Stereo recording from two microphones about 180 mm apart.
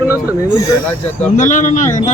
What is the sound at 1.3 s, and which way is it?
Speech, 45° left (ahead or behind).